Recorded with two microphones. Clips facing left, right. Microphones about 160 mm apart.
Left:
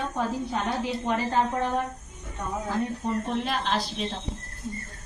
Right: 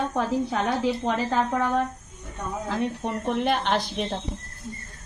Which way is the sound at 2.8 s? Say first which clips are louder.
Even; 65° right (ahead or behind).